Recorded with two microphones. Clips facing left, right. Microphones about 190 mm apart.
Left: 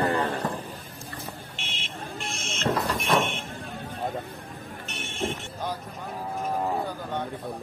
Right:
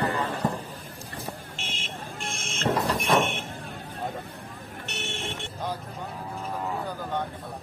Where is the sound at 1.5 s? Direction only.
45° right (ahead or behind).